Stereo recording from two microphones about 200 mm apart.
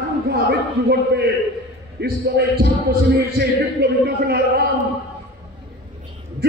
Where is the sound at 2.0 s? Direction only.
55° right (ahead or behind).